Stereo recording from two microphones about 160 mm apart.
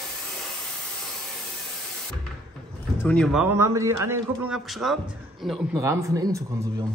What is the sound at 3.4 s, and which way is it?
Speech, 15° right (ahead or behind).